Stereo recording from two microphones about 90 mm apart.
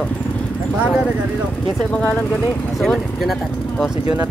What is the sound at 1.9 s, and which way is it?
Speech, 10° left (ahead or behind).